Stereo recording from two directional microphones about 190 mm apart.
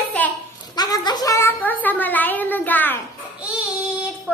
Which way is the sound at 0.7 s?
20° left (ahead or behind).